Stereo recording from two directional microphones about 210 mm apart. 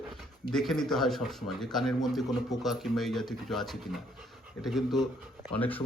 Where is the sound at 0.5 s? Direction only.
Centre (ahead or behind).